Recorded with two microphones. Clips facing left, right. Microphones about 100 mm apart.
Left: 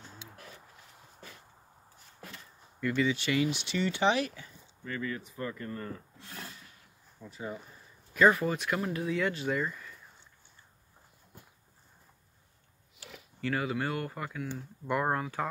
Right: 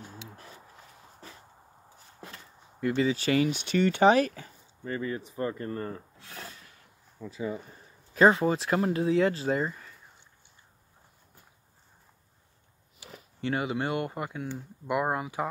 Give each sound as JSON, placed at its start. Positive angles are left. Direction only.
{"t": 2.8, "sound": "speech", "side_deg": -30}
{"t": 4.8, "sound": "speech", "side_deg": -30}
{"t": 7.2, "sound": "speech", "side_deg": -90}
{"t": 8.1, "sound": "speech", "side_deg": -30}
{"t": 13.4, "sound": "speech", "side_deg": -25}
{"t": 14.9, "sound": "speech", "side_deg": -10}